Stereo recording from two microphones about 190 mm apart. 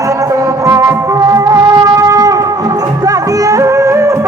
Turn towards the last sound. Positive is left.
turn(degrees=-15)  # may be behind; listen again after turning